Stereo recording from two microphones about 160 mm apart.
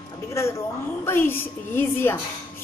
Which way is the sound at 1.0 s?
15° left (ahead or behind).